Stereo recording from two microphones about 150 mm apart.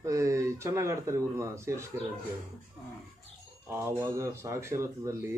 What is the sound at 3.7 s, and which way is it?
Speech, 15° right (ahead or behind).